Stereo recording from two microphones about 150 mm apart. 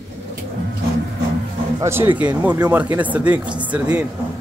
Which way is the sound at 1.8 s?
15° right (ahead or behind).